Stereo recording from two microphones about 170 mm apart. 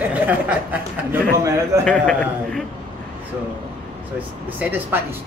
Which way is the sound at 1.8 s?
5° left (ahead or behind).